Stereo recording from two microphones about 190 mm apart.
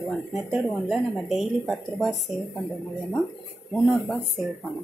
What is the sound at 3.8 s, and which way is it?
Speech, centre (ahead or behind).